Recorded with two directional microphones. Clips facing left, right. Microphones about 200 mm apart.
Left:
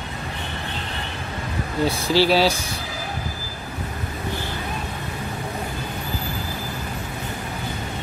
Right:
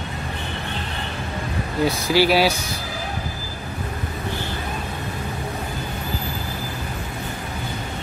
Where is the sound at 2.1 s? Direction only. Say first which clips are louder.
Even; 10° right (ahead or behind).